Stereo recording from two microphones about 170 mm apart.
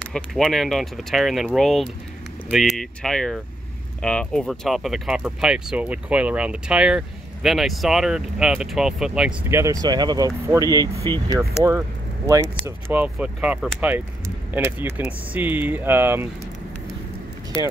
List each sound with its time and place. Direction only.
0.0 s speech: 5° left (ahead or behind)
9.5 s speech: 15° right (ahead or behind)
12.6 s speech: 10° right (ahead or behind)